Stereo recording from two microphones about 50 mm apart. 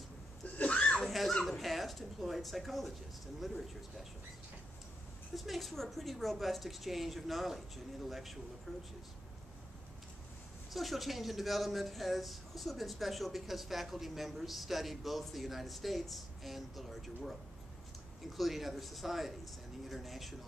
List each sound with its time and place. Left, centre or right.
0.6 s a sound: left
1.0 s speech: centre
5.3 s speech: centre
10.7 s speech: centre